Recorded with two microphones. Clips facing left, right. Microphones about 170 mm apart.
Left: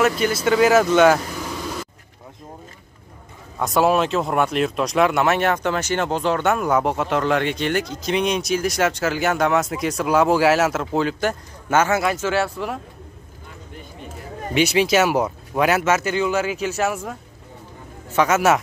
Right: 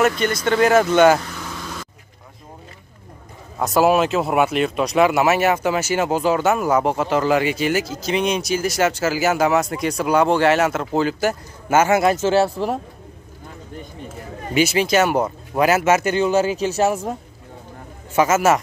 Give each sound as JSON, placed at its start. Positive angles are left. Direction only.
{"t": 0.0, "sound": "speech", "side_deg": 5}
{"t": 1.3, "sound": "vehicle", "side_deg": 15}
{"t": 3.5, "sound": "speech", "side_deg": 0}
{"t": 12.2, "sound": "speech", "side_deg": -35}
{"t": 14.5, "sound": "speech", "side_deg": 0}
{"t": 16.2, "sound": "speech", "side_deg": -35}
{"t": 18.1, "sound": "speech", "side_deg": -5}